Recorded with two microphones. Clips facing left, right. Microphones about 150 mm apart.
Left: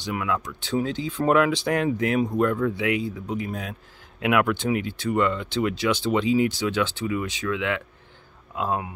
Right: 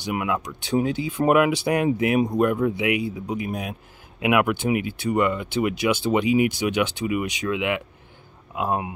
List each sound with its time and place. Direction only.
0.0 s speech: 15° right (ahead or behind)